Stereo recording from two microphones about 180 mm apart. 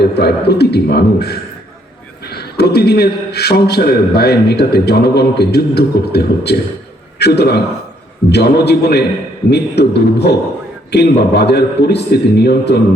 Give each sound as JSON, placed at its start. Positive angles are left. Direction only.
{"t": 0.0, "sound": "a man's voice", "side_deg": 65}